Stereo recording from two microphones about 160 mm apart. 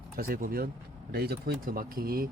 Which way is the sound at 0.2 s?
65° right (ahead or behind).